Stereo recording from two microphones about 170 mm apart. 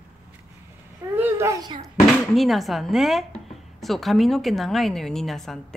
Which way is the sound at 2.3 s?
Centre (ahead or behind).